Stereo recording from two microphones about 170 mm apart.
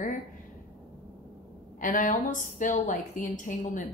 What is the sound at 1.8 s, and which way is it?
A woman's voice, 50° left (ahead or behind).